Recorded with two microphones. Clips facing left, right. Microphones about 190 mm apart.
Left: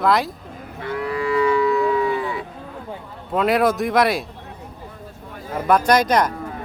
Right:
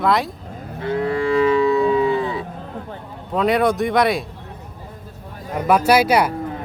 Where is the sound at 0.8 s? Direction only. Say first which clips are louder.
Right 4 dB; 30° right (ahead or behind).